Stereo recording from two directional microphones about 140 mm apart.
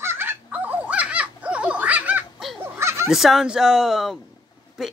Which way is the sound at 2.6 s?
20° right (ahead or behind).